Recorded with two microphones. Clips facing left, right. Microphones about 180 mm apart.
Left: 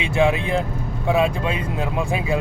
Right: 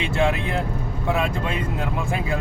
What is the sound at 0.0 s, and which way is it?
Speech, 15° left (ahead or behind).